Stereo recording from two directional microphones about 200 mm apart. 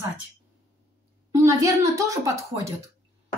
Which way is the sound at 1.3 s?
15° right (ahead or behind).